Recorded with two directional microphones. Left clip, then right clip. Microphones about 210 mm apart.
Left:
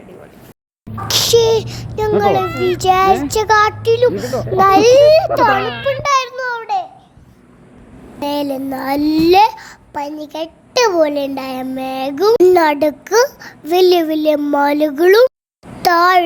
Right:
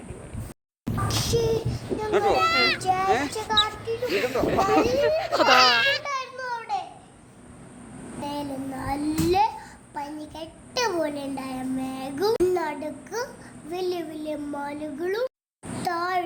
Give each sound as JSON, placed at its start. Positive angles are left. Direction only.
{"t": 1.0, "sound": "speech", "side_deg": 45}
{"t": 2.4, "sound": "a child's voice", "side_deg": -10}
{"t": 2.7, "sound": "a child's voice", "side_deg": 45}
{"t": 5.5, "sound": "a child's voice", "side_deg": -10}
{"t": 6.0, "sound": "a sound", "side_deg": 45}
{"t": 8.2, "sound": "a child's voice", "side_deg": 45}